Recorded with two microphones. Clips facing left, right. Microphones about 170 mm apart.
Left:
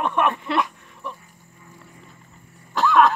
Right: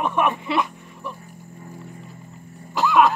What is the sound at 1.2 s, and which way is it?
Dog, 40° right (ahead or behind).